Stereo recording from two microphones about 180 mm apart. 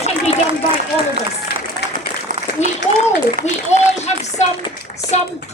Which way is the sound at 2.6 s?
40° left (ahead or behind).